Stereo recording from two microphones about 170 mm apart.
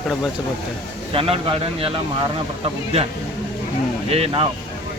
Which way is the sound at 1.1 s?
35° right (ahead or behind).